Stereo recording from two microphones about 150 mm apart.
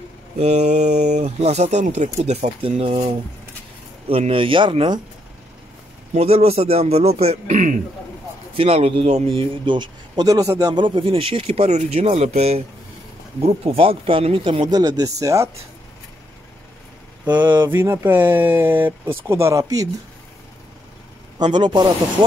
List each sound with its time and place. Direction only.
0.4 s speech: 45° right (ahead or behind); by 5.0 s 30° right (ahead or behind)
6.1 s speech: 40° right (ahead or behind); by 7.8 s 60° right (ahead or behind)
8.5 s speech: 45° right (ahead or behind); by 15.5 s 20° right (ahead or behind)
17.2 s speech: 10° right (ahead or behind)
21.4 s speech: 30° right (ahead or behind)